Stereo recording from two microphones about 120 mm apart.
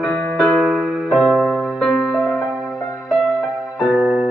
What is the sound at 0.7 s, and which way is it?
Music, centre (ahead or behind).